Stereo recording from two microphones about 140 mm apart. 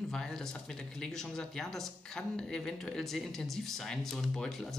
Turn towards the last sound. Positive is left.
turn(degrees=0)  # may be behind; listen again after turning